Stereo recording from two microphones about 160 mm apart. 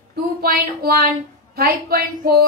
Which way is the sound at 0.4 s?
75° right (ahead or behind).